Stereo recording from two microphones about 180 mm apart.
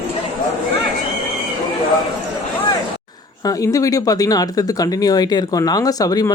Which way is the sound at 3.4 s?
20° left (ahead or behind).